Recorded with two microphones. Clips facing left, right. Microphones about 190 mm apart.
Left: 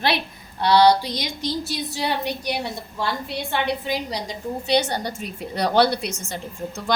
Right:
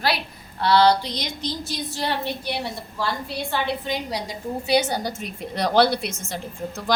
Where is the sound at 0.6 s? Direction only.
15° left (ahead or behind).